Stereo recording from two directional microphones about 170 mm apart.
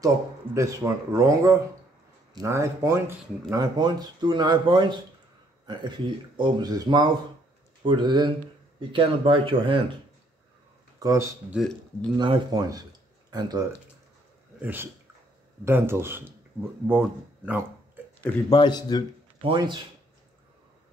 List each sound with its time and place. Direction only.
0.6 s speech: 15° right (ahead or behind)
11.0 s speech: 20° right (ahead or behind)
11.5 s speech: centre (ahead or behind)
12.2 s speech: 25° right (ahead or behind)
14.6 s speech: 10° right (ahead or behind)
18.5 s a man's voice: 25° left (ahead or behind)
19.4 s speech: 30° right (ahead or behind)